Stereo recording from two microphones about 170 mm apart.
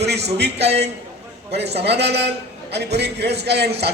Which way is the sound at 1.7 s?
80° right.